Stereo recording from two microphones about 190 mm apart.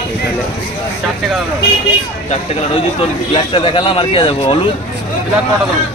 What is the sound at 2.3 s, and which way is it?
Speech, 30° left (ahead or behind).